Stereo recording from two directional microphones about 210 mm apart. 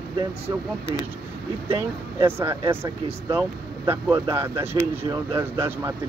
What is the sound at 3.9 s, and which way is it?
Speech, 15° right (ahead or behind).